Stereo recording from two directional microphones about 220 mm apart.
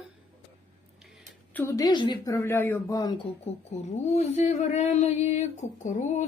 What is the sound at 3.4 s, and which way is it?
Speech, 30° left (ahead or behind).